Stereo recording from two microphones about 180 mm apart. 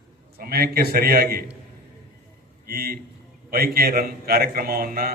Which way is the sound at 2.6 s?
55° right (ahead or behind).